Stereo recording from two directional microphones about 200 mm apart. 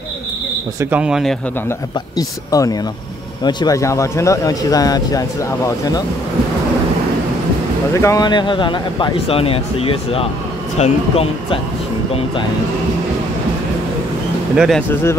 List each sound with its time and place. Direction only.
0.7 s speech: 10° right (ahead or behind)
1.7 s speech: 15° left (ahead or behind)
8.0 s speech: 20° left (ahead or behind)
14.5 s speech: 5° right (ahead or behind)